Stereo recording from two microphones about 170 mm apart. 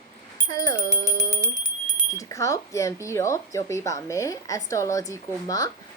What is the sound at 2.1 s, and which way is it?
A woman's voice, 20° left (ahead or behind).